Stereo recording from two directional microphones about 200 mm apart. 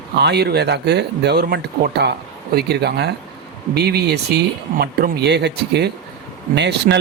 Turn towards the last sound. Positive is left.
turn(degrees=-60)  # may be behind; listen again after turning